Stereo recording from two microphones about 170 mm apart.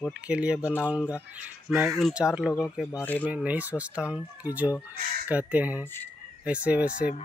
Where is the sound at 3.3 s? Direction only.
10° right (ahead or behind).